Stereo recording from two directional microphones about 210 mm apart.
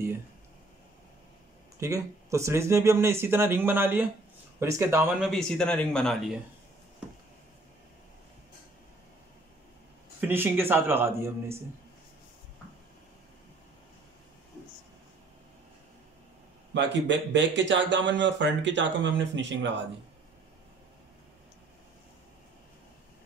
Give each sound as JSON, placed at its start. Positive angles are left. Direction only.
{"t": 1.8, "sound": "a man's voice", "side_deg": -15}
{"t": 10.2, "sound": "speech", "side_deg": -10}
{"t": 16.7, "sound": "speech", "side_deg": -60}